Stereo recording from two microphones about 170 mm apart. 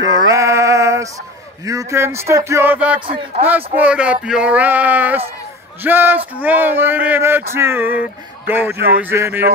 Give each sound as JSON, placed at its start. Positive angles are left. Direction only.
{"t": 0.0, "sound": "music", "side_deg": -20}
{"t": 1.6, "sound": "speech", "side_deg": -20}
{"t": 3.1, "sound": "a man's voice", "side_deg": -30}
{"t": 3.4, "sound": "speech", "side_deg": -10}
{"t": 8.7, "sound": "speech", "side_deg": -70}
{"t": 9.0, "sound": "speech", "side_deg": -15}